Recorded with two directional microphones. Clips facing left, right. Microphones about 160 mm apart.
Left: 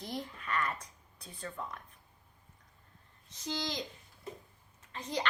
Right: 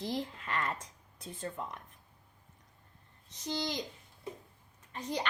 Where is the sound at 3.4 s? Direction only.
15° right (ahead or behind).